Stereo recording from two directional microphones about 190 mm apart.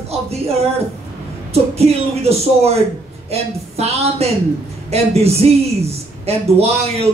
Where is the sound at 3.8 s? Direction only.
35° right (ahead or behind).